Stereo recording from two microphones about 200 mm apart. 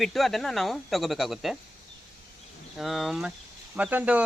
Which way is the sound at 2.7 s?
Centre (ahead or behind).